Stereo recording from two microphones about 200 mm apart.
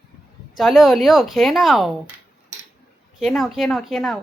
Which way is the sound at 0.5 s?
Centre (ahead or behind).